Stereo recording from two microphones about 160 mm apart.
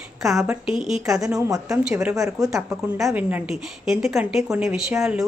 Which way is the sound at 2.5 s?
Centre (ahead or behind).